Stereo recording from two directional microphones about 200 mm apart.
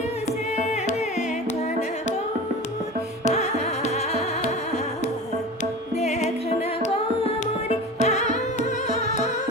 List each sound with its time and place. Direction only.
0.6 s music: 35° left (ahead or behind)
3.2 s music: 35° left (ahead or behind)
6.0 s music: 30° left (ahead or behind)
7.9 s music: 35° left (ahead or behind)